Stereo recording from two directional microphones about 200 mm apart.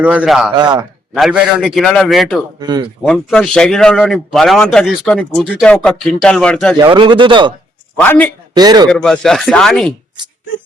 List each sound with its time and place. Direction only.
0.0 s a man's voice: 5° right (ahead or behind)
0.5 s speech: 20° right (ahead or behind)
1.1 s a man's voice: 5° right (ahead or behind)
2.6 s speech: 20° right (ahead or behind)
3.0 s a man's voice: centre (ahead or behind)
6.7 s speech: 20° right (ahead or behind)
7.9 s a man's voice: 10° left (ahead or behind)
8.5 s speech: 20° right (ahead or behind)
8.9 s a man's voice: 5° left (ahead or behind)